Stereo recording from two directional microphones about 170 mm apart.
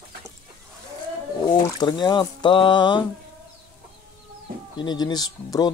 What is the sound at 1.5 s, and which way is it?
Speech, 25° left (ahead or behind).